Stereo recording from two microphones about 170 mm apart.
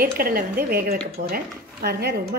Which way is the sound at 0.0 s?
60° right (ahead or behind).